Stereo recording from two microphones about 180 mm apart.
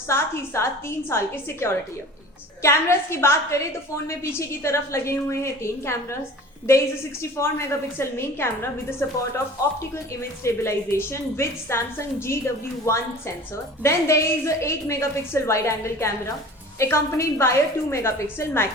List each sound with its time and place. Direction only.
0.1 s a woman's voice: 15° left (ahead or behind)
10.4 s a woman's voice: 15° left (ahead or behind)
13.8 s a woman's voice: 15° left (ahead or behind)